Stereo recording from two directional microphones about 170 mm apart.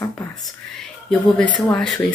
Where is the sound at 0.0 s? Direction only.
20° left (ahead or behind).